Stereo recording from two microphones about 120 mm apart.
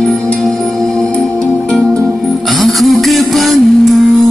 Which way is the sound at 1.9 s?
25° right (ahead or behind).